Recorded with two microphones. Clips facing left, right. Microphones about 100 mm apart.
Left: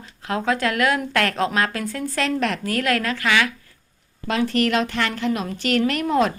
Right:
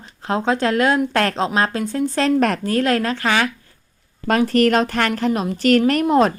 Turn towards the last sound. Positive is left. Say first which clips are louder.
# right 5 dB
turn(degrees=-35)  # may be behind; listen again after turning